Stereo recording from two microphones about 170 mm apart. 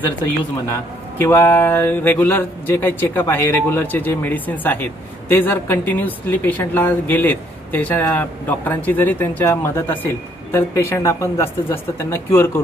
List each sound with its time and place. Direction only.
1.1 s speech: 10° left (ahead or behind)